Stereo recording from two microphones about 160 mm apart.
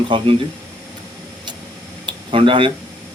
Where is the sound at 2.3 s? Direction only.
30° right (ahead or behind).